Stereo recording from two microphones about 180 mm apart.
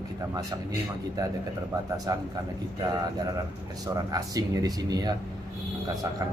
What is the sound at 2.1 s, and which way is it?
Speech, 20° right (ahead or behind).